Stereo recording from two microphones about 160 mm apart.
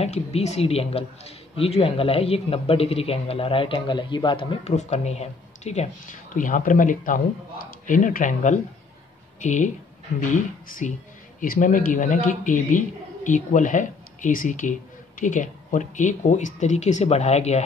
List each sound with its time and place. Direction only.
0.0 s a man's voice: 40° left (ahead or behind)